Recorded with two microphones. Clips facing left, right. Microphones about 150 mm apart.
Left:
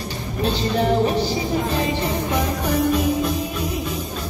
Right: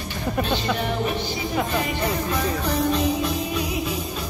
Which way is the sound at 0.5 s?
35° left (ahead or behind).